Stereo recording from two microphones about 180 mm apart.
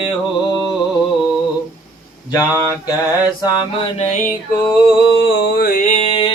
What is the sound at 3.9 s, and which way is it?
Mantra, 40° left (ahead or behind).